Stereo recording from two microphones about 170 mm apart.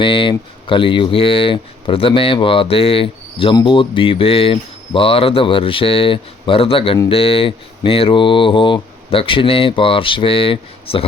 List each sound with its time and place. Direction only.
0.0 s speech: 30° left (ahead or behind)